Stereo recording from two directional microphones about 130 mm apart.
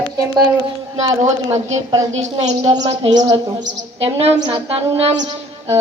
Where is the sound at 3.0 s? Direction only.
30° right (ahead or behind).